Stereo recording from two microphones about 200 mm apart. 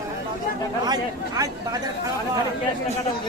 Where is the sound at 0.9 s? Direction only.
20° right (ahead or behind).